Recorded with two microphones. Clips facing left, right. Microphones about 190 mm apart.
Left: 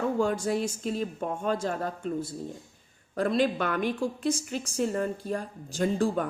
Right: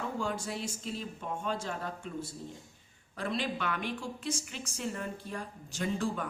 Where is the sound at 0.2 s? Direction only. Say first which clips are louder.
Left 9 dB; 45° left (ahead or behind).